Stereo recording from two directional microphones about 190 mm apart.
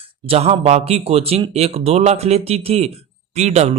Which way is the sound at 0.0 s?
30° right (ahead or behind).